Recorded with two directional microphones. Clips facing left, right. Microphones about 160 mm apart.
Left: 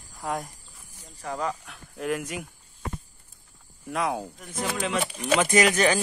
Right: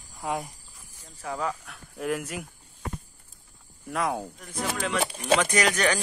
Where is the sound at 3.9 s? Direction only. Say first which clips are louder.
Even; 5° left (ahead or behind).